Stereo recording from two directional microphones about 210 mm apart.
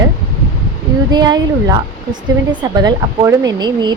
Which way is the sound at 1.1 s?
20° right (ahead or behind).